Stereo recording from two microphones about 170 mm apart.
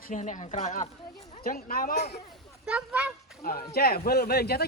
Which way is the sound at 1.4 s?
55° left (ahead or behind).